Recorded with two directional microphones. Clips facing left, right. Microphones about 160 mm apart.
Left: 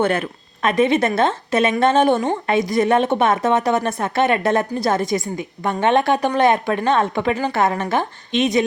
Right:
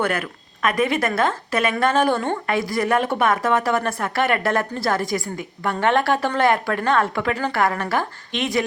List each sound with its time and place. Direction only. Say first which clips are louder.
0.0 s speech: left 4 dB; 25° left (ahead or behind)